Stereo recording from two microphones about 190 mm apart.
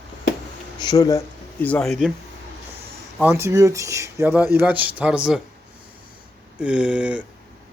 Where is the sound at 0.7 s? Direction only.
20° left (ahead or behind).